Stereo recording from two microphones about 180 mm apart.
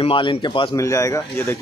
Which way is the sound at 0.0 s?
30° left (ahead or behind).